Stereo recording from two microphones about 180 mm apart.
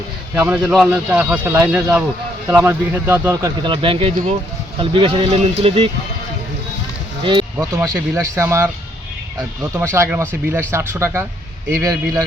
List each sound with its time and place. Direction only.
0.3 s speech: 5° right (ahead or behind); by 5.9 s 35° right (ahead or behind)
7.8 s speech: 15° right (ahead or behind)
9.7 s speech: 15° right (ahead or behind)